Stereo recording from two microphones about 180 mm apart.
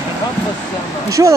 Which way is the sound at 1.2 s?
20° right (ahead or behind).